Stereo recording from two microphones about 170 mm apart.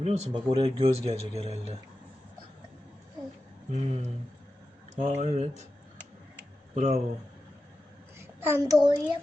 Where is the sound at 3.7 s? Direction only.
40° right (ahead or behind).